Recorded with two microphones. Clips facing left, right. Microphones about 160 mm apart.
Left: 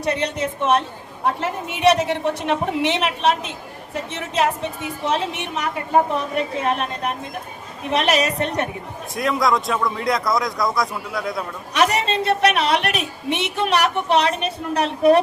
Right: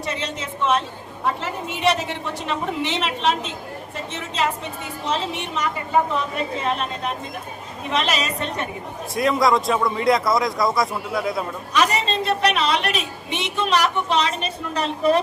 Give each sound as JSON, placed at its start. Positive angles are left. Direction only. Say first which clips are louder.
{"t": 0.0, "sound": "a woman's voice", "louder": "left 6 dB", "side_deg": 65}
{"t": 5.0, "sound": "a woman's voice", "louder": "left 2 dB", "side_deg": 60}
{"t": 9.1, "sound": "a man's voice", "louder": "right 1 dB", "side_deg": 0}
{"t": 11.7, "sound": "a woman's voice", "louder": "left 2 dB", "side_deg": 70}